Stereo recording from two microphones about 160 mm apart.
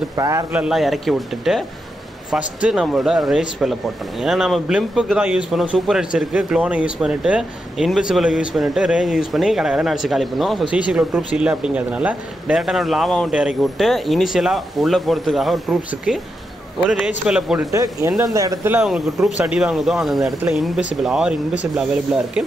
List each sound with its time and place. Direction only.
0.1 s speech: 20° right (ahead or behind); by 17.6 s 5° right (ahead or behind)
17.6 s speech: 20° right (ahead or behind)
18.9 s speech: centre (ahead or behind)